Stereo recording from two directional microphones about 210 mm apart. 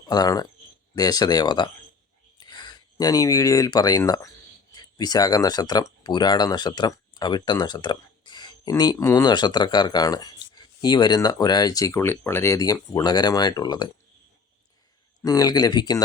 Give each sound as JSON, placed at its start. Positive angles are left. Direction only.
{"t": 0.1, "sound": "speech", "side_deg": 20}
{"t": 15.2, "sound": "speech", "side_deg": 15}